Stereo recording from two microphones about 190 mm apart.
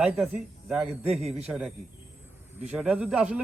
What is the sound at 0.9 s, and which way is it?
Speech, 35° right (ahead or behind).